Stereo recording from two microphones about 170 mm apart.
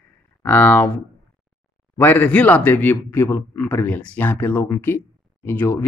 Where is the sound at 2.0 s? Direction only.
10° left (ahead or behind).